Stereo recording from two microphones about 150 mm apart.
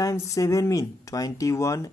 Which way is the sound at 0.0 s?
20° left (ahead or behind).